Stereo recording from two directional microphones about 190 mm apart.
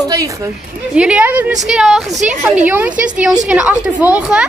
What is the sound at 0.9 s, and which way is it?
Speech, 5° right (ahead or behind).